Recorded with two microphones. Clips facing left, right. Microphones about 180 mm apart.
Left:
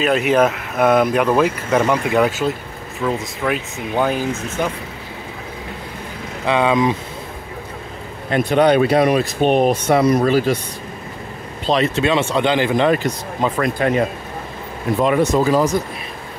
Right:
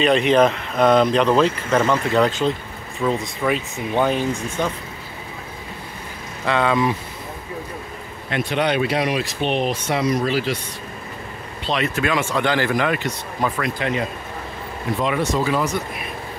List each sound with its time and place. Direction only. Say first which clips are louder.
0.0 s speech: even; 5° left (ahead or behind)
6.4 s speech: left 3 dB; 15° left (ahead or behind)
8.3 s speech: left 7 dB; 45° left (ahead or behind)
11.6 s speech: left 6 dB; 35° left (ahead or behind)
11.9 s speech: left 4 dB; 25° left (ahead or behind)
13.6 s speech: left 6 dB; 45° left (ahead or behind)